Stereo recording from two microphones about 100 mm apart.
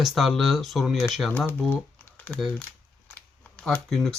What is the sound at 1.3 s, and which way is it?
Speech, 20° left (ahead or behind).